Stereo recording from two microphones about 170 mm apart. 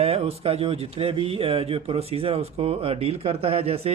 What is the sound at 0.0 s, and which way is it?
Speech, 35° right (ahead or behind).